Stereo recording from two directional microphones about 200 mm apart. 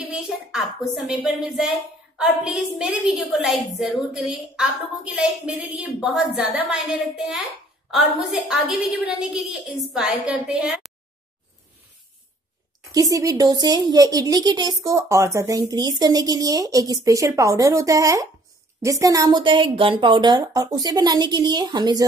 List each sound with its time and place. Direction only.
0.1 s a woman's voice: 5° right (ahead or behind)
12.9 s a woman's voice: 15° right (ahead or behind)